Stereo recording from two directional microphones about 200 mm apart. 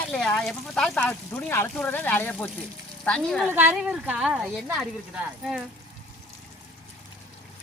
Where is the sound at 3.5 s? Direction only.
10° right (ahead or behind).